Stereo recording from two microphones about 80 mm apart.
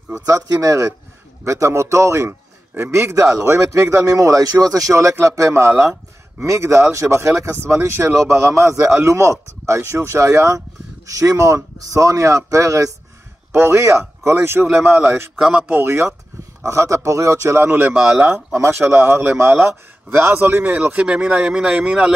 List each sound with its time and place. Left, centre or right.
0.1 s a man's voice: right
15.3 s speech: centre
15.7 s speech: right
17.6 s speech: right
17.9 s speech: centre
18.3 s speech: right; by 22.1 s centre